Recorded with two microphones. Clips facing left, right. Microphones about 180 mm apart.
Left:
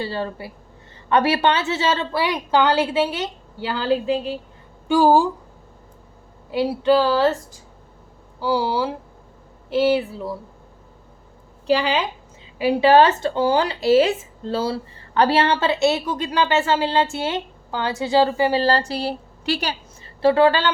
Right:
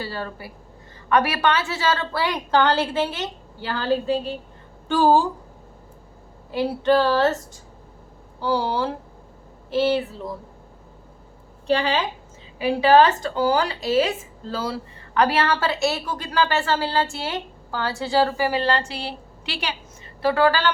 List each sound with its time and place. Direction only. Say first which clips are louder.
0.0 s a woman's voice: left 4 dB; 25° left (ahead or behind)
6.5 s a woman's voice: left 2 dB; 10° left (ahead or behind)
8.4 s a woman's voice: left 2 dB; 10° left (ahead or behind)
12.5 s speech: left 2 dB; 25° left (ahead or behind)
18.6 s speech: left 4 dB; 35° left (ahead or behind)
20.2 s speech: left 4 dB; 25° left (ahead or behind)